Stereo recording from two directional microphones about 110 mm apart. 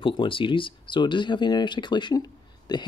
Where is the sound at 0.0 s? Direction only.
50° left (ahead or behind).